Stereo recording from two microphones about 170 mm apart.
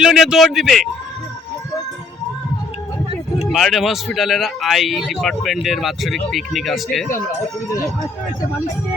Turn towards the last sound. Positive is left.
turn(degrees=0)  # may be behind; listen again after turning